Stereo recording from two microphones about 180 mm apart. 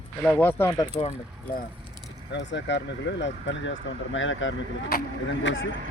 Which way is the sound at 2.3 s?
80° left.